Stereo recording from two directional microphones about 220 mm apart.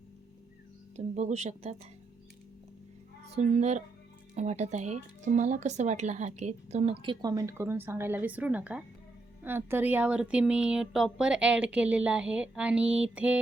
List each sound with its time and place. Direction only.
0.9 s speech: 30° right (ahead or behind)
3.3 s speech: 30° right (ahead or behind)
7.0 s a woman's voice: 20° right (ahead or behind)